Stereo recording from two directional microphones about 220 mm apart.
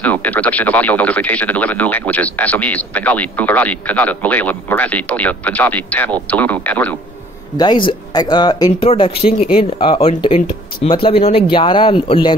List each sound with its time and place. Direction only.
0.0 s speech: 5° left (ahead or behind)
7.5 s speech: 20° left (ahead or behind)